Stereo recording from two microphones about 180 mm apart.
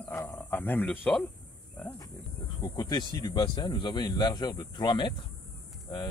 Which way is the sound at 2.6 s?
20° left (ahead or behind).